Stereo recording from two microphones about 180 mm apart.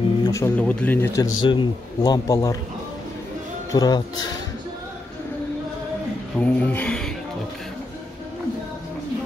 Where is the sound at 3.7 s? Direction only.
20° left (ahead or behind).